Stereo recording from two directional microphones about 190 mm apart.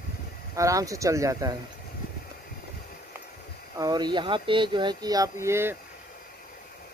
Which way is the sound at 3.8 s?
20° right (ahead or behind).